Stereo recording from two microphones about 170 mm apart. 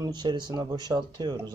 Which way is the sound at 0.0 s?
25° right (ahead or behind).